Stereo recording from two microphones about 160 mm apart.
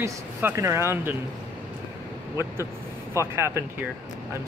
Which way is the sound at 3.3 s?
15° right (ahead or behind).